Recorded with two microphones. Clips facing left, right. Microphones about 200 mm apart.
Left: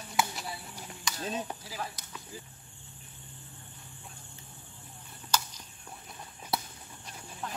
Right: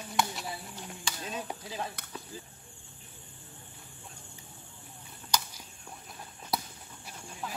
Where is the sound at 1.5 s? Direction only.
20° right (ahead or behind).